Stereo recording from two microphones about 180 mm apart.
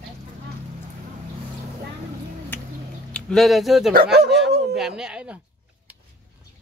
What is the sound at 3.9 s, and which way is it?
Speech, 60° right (ahead or behind).